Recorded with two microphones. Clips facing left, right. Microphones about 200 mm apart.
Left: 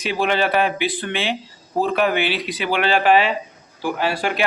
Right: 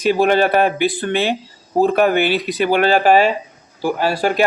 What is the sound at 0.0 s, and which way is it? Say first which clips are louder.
A man's voice: right 6 dB; 45° right (ahead or behind).